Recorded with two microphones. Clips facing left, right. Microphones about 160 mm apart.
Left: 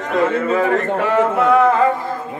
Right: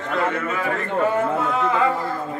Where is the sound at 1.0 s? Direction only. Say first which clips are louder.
Left 3 dB; 90° left.